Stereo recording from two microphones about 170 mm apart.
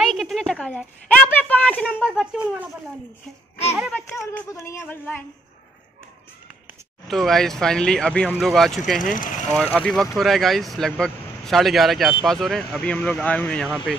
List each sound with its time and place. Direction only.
0.0 s a sound: centre (ahead or behind)
2.0 s speech: 5° right (ahead or behind)
4.2 s speech: 5° left (ahead or behind)
7.1 s speech: centre (ahead or behind)
9.1 s speech: 50° left (ahead or behind)
9.8 s speech: 5° left (ahead or behind)